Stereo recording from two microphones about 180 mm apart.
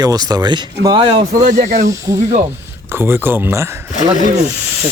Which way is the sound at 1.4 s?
45° right (ahead or behind).